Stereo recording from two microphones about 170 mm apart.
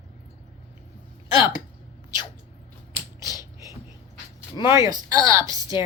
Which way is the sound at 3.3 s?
20° left (ahead or behind).